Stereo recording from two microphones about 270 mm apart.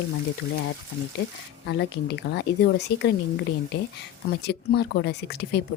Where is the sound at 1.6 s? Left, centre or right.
Left.